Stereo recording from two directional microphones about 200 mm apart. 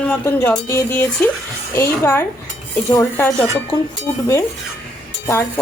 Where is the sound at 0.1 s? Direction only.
10° left (ahead or behind).